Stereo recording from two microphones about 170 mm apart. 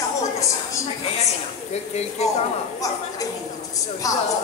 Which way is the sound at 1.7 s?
40° left (ahead or behind).